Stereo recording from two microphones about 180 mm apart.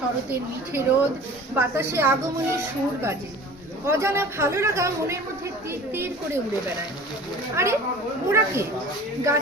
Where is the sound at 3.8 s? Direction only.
15° right (ahead or behind).